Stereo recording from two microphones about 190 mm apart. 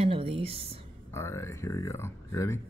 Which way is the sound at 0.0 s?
30° right (ahead or behind).